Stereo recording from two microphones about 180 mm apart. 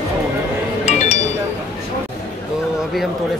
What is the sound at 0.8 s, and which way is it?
Chink, 40° left (ahead or behind).